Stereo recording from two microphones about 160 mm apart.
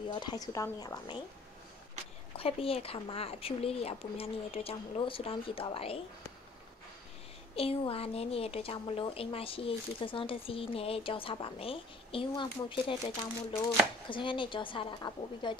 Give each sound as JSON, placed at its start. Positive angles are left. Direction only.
{"t": 0.1, "sound": "a woman's voice", "side_deg": 25}
{"t": 2.3, "sound": "speech", "side_deg": 35}
{"t": 7.5, "sound": "speech", "side_deg": 35}